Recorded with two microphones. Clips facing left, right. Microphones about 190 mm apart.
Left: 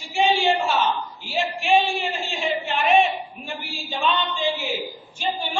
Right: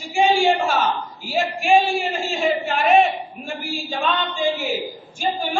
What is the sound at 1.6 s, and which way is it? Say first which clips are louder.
A man's voice: right 3 dB; 45° right (ahead or behind).